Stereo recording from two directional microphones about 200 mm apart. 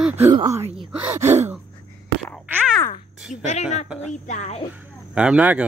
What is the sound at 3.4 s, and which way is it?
Speech, 35° left (ahead or behind).